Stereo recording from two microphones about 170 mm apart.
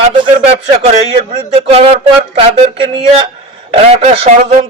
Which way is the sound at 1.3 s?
35° right (ahead or behind).